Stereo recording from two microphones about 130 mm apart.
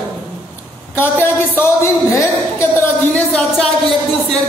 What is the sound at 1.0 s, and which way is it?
Speech, 15° left (ahead or behind).